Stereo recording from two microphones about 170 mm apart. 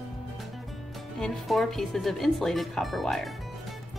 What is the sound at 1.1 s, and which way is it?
A woman's voice, centre (ahead or behind).